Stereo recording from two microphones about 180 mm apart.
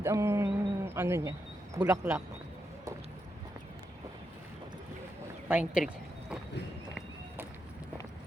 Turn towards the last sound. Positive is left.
turn(degrees=-5)  # may be behind; listen again after turning